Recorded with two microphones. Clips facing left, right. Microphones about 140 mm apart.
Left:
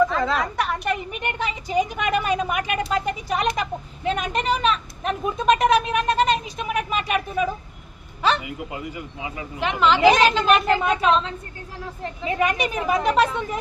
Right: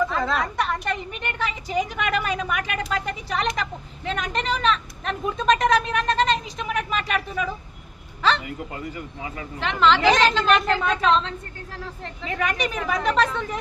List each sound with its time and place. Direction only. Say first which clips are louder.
0.0 s a woman's voice: left 3 dB; centre (ahead or behind)
1.1 s a woman's voice: left 2 dB; 20° left (ahead or behind)